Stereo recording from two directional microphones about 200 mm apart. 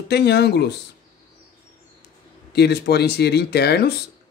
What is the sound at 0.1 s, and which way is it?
Speech, 55° left (ahead or behind).